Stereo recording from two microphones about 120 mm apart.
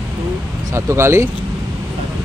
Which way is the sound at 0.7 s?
20° right (ahead or behind).